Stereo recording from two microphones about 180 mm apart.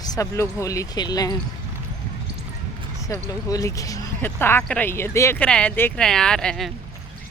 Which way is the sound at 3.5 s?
20° left (ahead or behind).